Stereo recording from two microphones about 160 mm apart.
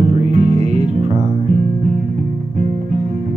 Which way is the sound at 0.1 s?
40° right (ahead or behind).